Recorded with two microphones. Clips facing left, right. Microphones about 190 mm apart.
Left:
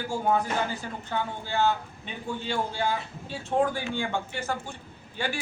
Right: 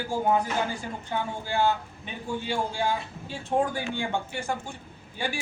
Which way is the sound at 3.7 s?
15° right (ahead or behind).